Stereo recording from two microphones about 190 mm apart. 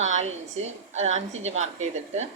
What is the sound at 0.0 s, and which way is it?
A woman's voice, 35° right (ahead or behind).